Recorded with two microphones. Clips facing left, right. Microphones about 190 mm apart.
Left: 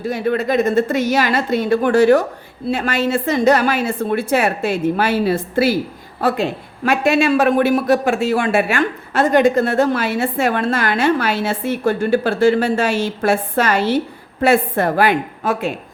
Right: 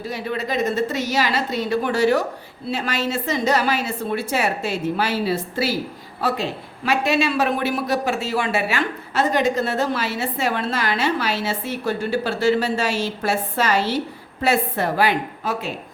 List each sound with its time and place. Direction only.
0.0 s a woman's voice: 50° left (ahead or behind)